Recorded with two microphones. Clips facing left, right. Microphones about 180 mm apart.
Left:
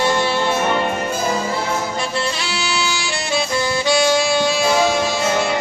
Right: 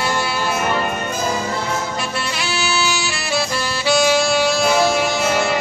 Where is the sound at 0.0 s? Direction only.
25° left (ahead or behind).